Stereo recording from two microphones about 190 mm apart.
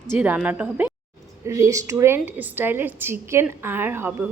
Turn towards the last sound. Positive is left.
turn(degrees=-10)  # may be behind; listen again after turning